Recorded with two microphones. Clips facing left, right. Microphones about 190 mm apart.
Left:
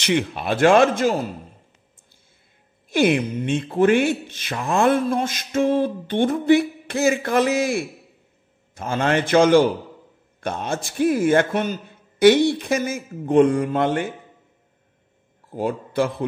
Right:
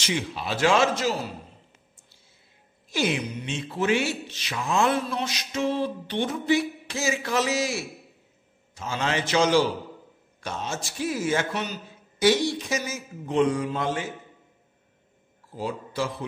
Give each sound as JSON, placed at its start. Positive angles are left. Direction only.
{"t": 0.0, "sound": "a man's voice", "side_deg": 60}
{"t": 2.9, "sound": "a man's voice", "side_deg": 55}
{"t": 15.5, "sound": "a man's voice", "side_deg": 55}